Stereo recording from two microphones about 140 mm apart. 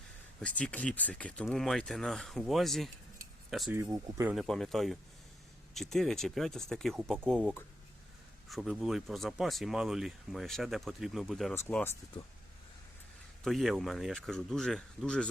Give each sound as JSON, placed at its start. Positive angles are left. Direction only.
{"t": 0.3, "sound": "speech", "side_deg": 10}
{"t": 3.7, "sound": "speech", "side_deg": -20}
{"t": 4.4, "sound": "speech", "side_deg": 5}
{"t": 8.4, "sound": "speech", "side_deg": 0}
{"t": 11.5, "sound": "speech", "side_deg": 15}
{"t": 13.4, "sound": "speech", "side_deg": 0}